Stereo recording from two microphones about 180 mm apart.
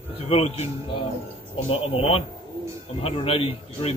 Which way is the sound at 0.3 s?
35° left (ahead or behind).